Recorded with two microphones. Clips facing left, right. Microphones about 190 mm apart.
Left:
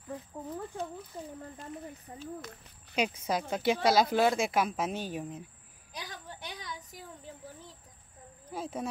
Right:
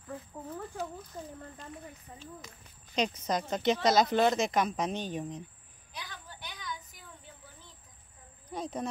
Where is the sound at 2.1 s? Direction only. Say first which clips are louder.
Left 4 dB; 40° left (ahead or behind).